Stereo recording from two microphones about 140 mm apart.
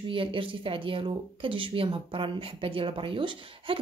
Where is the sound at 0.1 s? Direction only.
40° right (ahead or behind).